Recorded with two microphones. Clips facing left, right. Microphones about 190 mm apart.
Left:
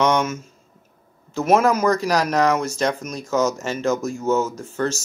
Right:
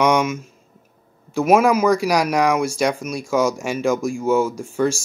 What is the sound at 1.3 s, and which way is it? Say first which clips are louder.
Speech: right 2 dB; 10° right (ahead or behind).